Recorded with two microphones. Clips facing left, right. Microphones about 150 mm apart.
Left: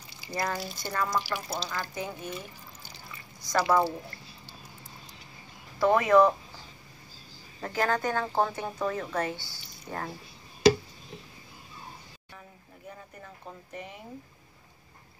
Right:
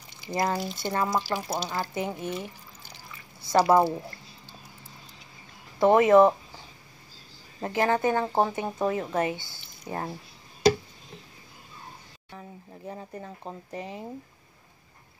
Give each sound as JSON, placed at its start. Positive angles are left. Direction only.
{"t": 0.3, "sound": "speech", "side_deg": -20}
{"t": 3.4, "sound": "speech", "side_deg": -30}
{"t": 5.8, "sound": "speech", "side_deg": -25}
{"t": 7.6, "sound": "speech", "side_deg": -25}
{"t": 12.4, "sound": "speech", "side_deg": -35}